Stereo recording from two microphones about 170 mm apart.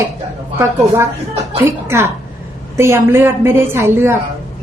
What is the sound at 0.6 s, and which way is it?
A woman's voice, 15° right (ahead or behind).